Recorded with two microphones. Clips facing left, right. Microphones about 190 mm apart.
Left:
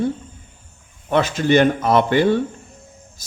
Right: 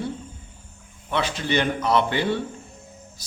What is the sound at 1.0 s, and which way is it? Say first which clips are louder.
A man's voice: left 8 dB; 45° left (ahead or behind).